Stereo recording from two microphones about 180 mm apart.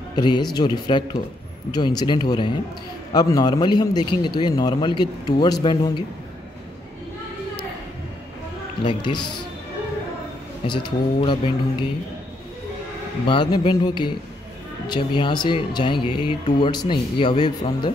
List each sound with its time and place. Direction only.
0.1 s a man's voice: 25° left (ahead or behind)
8.8 s a man's voice: 25° left (ahead or behind)
10.7 s a man's voice: 25° left (ahead or behind)
13.3 s a man's voice: 25° left (ahead or behind)